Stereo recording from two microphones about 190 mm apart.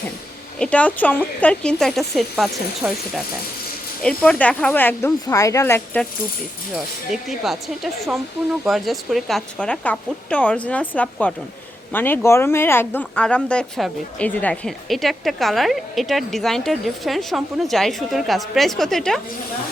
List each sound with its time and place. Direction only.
0.6 s speech: 5° left (ahead or behind)
6.7 s speech: centre (ahead or behind)